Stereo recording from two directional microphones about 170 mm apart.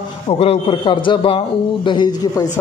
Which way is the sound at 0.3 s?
35° left (ahead or behind).